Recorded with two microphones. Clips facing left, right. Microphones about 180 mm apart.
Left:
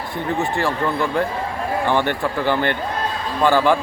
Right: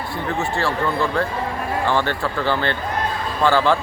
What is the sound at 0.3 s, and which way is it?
Speech, 15° left (ahead or behind).